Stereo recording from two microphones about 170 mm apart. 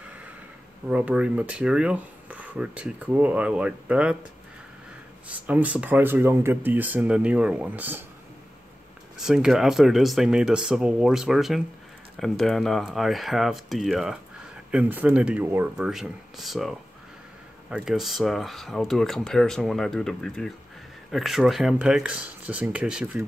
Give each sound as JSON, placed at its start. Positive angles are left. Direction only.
{"t": 0.8, "sound": "speech", "side_deg": -5}
{"t": 5.3, "sound": "speech", "side_deg": -10}
{"t": 9.2, "sound": "speech", "side_deg": -5}